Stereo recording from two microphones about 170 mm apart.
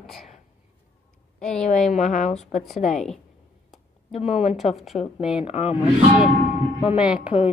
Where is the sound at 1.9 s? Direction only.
40° left (ahead or behind).